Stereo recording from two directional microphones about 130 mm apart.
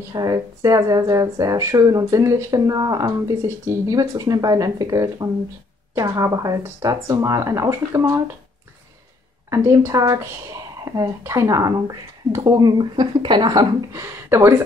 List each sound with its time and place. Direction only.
0.1 s speech: 30° right (ahead or behind)
9.5 s speech: 25° right (ahead or behind)